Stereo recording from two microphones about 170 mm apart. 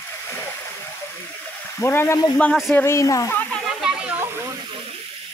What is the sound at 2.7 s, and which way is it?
Speech, 15° left (ahead or behind).